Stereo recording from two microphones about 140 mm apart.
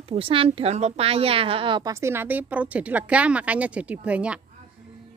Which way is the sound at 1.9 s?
20° right (ahead or behind).